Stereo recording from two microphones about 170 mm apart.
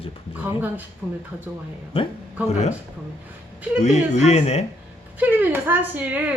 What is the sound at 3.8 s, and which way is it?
Speech, 40° left (ahead or behind).